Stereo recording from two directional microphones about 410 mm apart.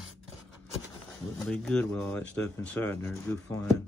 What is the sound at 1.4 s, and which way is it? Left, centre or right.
Speech, centre.